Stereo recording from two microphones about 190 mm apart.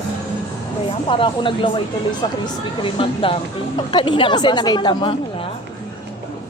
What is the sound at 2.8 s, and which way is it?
A woman's voice, 30° left (ahead or behind).